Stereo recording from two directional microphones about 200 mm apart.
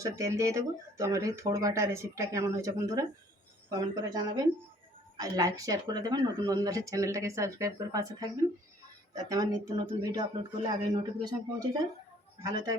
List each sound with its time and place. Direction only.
0.0 s speech: 15° right (ahead or behind)
5.2 s speech: 15° right (ahead or behind)